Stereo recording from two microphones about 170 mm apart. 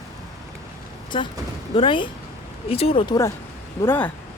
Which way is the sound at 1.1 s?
30° left (ahead or behind).